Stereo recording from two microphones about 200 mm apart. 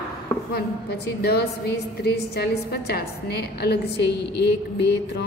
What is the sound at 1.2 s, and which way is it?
A woman's voice, 55° left (ahead or behind).